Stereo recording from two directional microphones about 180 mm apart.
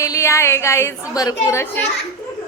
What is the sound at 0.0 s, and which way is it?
A woman's voice, 15° left (ahead or behind).